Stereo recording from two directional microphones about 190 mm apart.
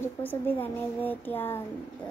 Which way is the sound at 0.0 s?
10° left (ahead or behind).